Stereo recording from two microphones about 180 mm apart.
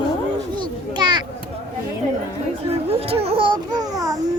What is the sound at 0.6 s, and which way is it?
Children playing, 25° right (ahead or behind).